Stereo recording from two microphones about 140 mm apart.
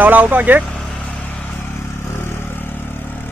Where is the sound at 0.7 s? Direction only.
5° left (ahead or behind).